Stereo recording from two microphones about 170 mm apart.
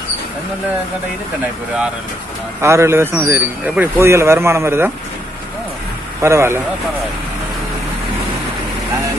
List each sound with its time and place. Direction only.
2.6 s speech: 15° right (ahead or behind)
6.2 s speech: 15° right (ahead or behind)